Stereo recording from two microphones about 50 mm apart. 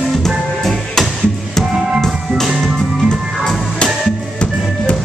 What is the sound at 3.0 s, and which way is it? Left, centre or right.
Music, centre.